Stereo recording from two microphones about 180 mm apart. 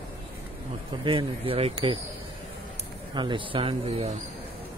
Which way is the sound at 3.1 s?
25° right (ahead or behind).